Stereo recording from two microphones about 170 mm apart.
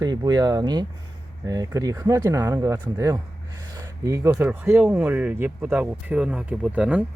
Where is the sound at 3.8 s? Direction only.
20° right (ahead or behind).